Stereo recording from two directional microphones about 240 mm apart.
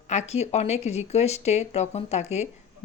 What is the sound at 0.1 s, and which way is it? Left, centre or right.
Speech, left.